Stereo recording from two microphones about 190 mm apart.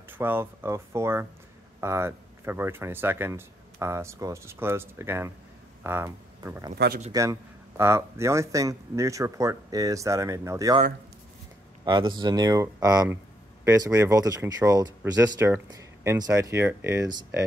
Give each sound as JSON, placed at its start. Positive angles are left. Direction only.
{"t": 0.2, "sound": "a man's voice", "side_deg": -10}
{"t": 11.8, "sound": "a man's voice", "side_deg": -25}